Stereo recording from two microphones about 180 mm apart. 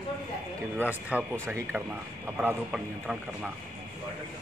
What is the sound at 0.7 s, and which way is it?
Speech, 10° right (ahead or behind).